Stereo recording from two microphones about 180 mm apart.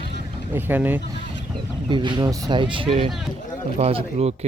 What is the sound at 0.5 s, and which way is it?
Speech, 10° right (ahead or behind).